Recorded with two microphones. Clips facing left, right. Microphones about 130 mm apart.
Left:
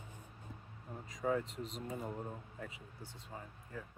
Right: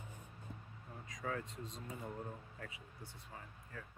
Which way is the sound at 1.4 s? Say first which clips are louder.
Left 4 dB; 90° left.